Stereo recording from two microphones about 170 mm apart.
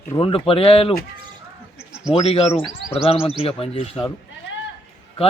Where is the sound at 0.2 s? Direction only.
30° left (ahead or behind).